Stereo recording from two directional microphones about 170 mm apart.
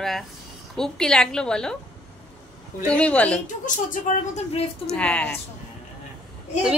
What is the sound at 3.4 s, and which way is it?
Speech, 50° left (ahead or behind).